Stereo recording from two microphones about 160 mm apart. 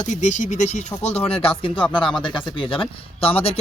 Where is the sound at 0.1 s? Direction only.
50° left (ahead or behind).